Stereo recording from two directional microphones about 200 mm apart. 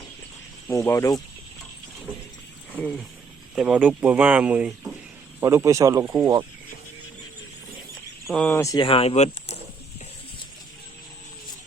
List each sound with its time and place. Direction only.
0.7 s speech: 15° left (ahead or behind)
2.7 s speech: 5° left (ahead or behind); by 6.4 s 15° right (ahead or behind)
8.3 s speech: 5° left (ahead or behind); by 9.6 s 35° left (ahead or behind)